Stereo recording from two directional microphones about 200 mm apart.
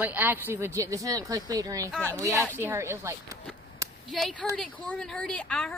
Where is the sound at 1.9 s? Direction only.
10° left (ahead or behind).